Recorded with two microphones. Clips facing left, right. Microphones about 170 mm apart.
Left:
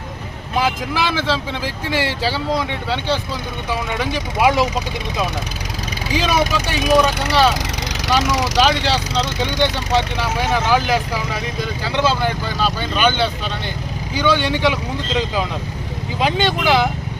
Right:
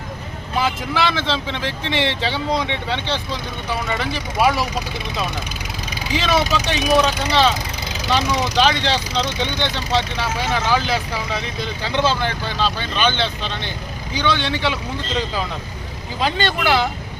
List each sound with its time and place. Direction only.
0.6 s speech: 10° left (ahead or behind)
6.1 s speech: 10° left (ahead or behind)
8.6 s speech: 5° left (ahead or behind)